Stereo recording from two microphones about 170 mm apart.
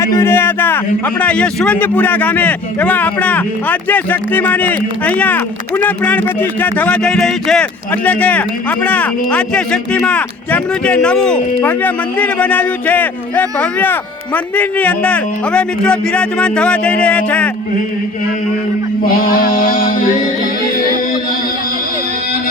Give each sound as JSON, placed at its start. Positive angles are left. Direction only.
{"t": 0.0, "sound": "a man's voice", "side_deg": 15}
{"t": 19.1, "sound": "music", "side_deg": 55}